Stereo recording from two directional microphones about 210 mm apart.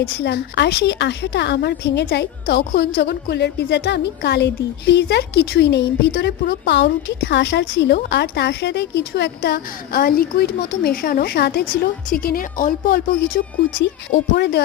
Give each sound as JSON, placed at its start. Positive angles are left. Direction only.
{"t": 0.2, "sound": "a woman's voice", "side_deg": 55}
{"t": 13.8, "sound": "a woman's voice", "side_deg": 55}